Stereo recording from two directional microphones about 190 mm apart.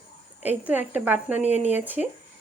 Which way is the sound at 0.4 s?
10° right (ahead or behind).